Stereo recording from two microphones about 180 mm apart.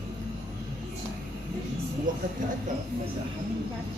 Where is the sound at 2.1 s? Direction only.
45° right (ahead or behind).